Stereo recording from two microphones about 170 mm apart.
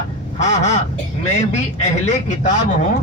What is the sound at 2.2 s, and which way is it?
Speech, 45° left (ahead or behind).